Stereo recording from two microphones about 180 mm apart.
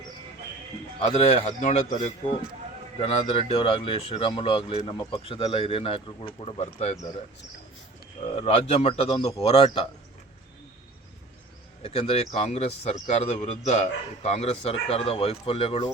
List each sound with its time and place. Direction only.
0.9 s speech: 35° left (ahead or behind)
8.4 s speech: 35° left (ahead or behind)
11.8 s speech: 35° left (ahead or behind)